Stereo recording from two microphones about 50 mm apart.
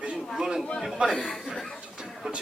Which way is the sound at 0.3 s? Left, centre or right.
Centre.